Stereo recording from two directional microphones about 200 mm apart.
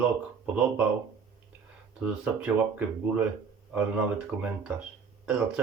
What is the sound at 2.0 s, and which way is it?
A man's voice, 5° right (ahead or behind).